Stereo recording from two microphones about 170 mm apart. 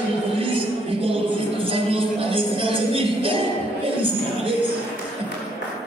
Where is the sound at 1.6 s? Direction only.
35° right (ahead or behind).